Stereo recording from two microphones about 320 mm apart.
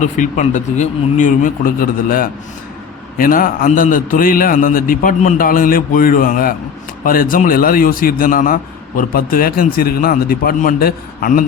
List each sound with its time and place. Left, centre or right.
0.0 s a man's voice: left